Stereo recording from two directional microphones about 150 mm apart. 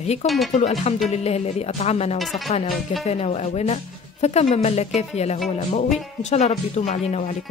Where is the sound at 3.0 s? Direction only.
45° left (ahead or behind).